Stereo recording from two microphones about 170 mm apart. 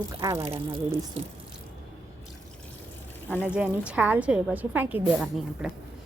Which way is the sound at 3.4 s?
5° right (ahead or behind).